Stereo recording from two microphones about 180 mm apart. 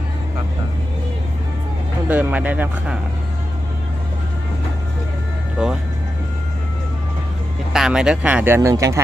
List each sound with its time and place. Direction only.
2.0 s speech: 10° right (ahead or behind)
5.6 s speech: 5° right (ahead or behind)
7.7 s speech: 5° right (ahead or behind)